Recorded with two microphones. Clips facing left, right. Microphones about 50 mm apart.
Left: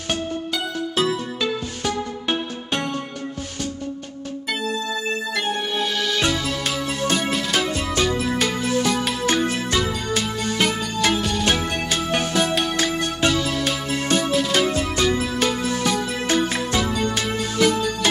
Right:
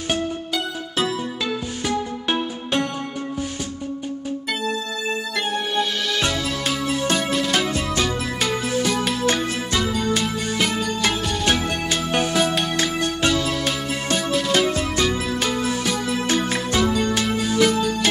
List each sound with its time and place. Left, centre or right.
6.1 s music: centre
12.1 s music: centre